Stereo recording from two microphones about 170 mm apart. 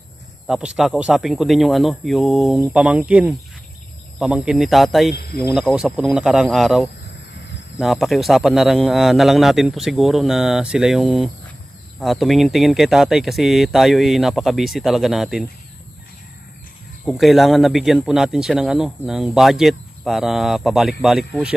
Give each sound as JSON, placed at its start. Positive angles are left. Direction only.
{"t": 0.5, "sound": "a man's voice", "side_deg": -5}
{"t": 5.1, "sound": "speech", "side_deg": 65}
{"t": 5.5, "sound": "a man's voice", "side_deg": -5}
{"t": 17.0, "sound": "a man's voice", "side_deg": 0}